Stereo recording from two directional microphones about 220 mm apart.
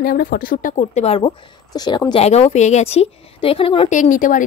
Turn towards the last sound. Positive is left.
turn(degrees=35)  # may be behind; listen again after turning